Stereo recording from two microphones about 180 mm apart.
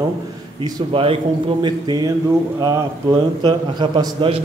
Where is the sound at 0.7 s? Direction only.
30° right (ahead or behind).